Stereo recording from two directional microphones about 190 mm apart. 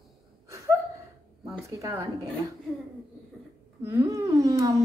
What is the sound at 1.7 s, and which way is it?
Speech, 15° right (ahead or behind).